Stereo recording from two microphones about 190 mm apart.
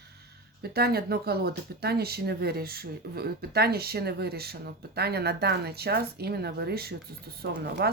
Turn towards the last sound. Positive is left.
turn(degrees=-60)  # may be behind; listen again after turning